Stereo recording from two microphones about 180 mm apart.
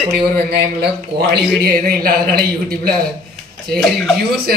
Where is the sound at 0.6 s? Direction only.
65° right (ahead or behind).